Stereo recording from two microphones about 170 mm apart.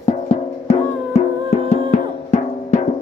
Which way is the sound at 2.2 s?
40° left (ahead or behind).